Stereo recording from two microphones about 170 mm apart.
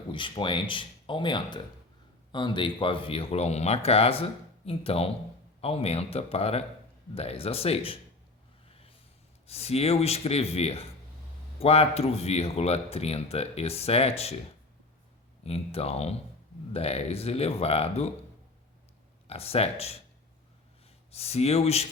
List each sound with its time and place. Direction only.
0.1 s speech: 30° left (ahead or behind)
8.7 s a sound: 35° left (ahead or behind)
9.5 s speech: 35° left (ahead or behind)
15.4 s speech: 35° left (ahead or behind)
19.3 s speech: 35° left (ahead or behind)
21.1 s speech: 35° left (ahead or behind)